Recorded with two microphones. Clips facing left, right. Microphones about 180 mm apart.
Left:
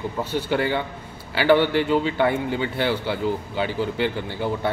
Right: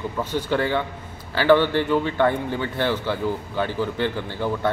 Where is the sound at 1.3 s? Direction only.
15° left (ahead or behind).